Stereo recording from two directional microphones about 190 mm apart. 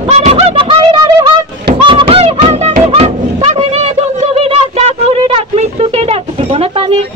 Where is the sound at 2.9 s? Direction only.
35° right (ahead or behind).